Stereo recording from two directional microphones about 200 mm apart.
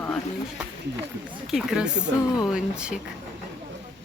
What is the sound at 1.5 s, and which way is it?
Speech, 5° right (ahead or behind).